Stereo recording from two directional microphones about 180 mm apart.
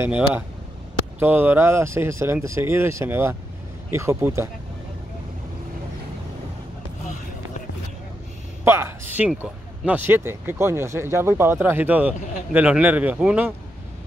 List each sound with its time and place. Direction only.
0.0 s speech: 10° right (ahead or behind)
8.6 s speech: 15° right (ahead or behind)